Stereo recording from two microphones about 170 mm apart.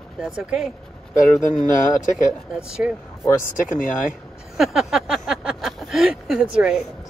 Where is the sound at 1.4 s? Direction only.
50° left (ahead or behind).